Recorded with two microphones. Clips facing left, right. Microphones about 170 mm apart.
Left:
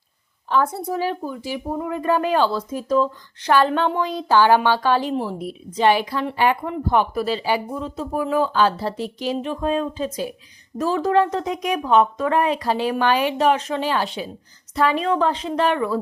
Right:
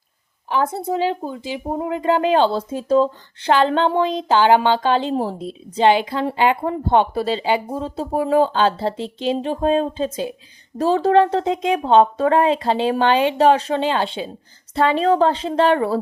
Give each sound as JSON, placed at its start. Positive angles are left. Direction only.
{"t": 0.5, "sound": "speech", "side_deg": -20}
{"t": 5.1, "sound": "speech", "side_deg": -35}